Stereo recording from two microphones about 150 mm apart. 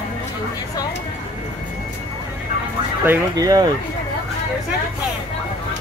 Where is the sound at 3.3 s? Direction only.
25° right (ahead or behind).